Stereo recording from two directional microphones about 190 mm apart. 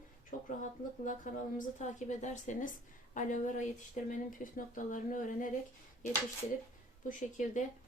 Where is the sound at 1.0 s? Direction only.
45° left (ahead or behind).